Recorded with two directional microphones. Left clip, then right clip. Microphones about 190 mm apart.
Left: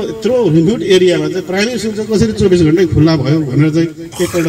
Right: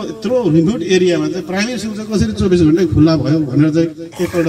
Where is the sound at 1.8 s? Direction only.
60° right (ahead or behind).